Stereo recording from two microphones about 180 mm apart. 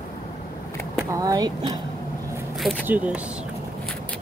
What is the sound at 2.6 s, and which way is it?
Speech, centre (ahead or behind).